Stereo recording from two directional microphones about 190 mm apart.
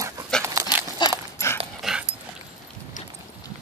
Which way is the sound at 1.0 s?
20° left (ahead or behind).